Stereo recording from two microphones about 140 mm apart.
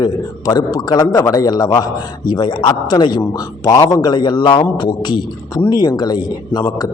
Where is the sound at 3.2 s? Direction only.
20° left (ahead or behind).